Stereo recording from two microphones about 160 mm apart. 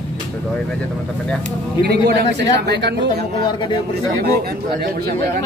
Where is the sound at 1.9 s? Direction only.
85° right.